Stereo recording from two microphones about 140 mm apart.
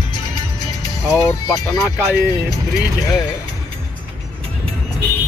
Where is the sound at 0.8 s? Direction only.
20° left (ahead or behind).